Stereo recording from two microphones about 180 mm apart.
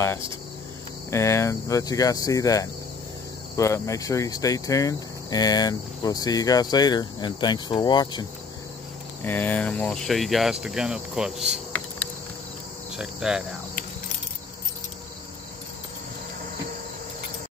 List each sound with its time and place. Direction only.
1.1 s speech: 15° left (ahead or behind)
9.2 s speech: 10° left (ahead or behind)
12.9 s speech: 5° right (ahead or behind)